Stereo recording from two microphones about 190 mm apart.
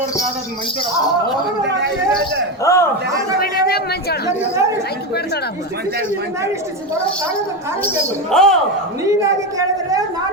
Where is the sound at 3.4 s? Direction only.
50° left (ahead or behind).